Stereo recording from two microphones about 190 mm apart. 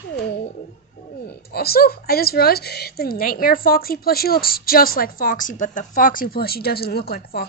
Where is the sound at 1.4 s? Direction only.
55° left (ahead or behind).